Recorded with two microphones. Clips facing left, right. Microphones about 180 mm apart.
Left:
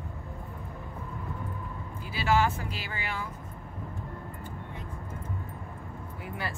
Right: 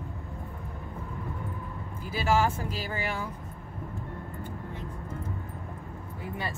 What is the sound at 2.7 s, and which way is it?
Speech, 40° right (ahead or behind).